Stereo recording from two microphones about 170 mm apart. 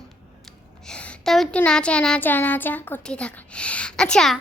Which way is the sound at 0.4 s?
5° left (ahead or behind).